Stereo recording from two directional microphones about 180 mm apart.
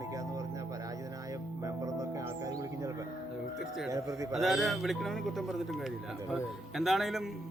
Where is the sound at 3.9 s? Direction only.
20° right (ahead or behind).